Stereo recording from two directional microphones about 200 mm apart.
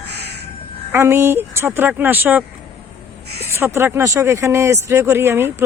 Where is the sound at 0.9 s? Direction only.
10° right (ahead or behind).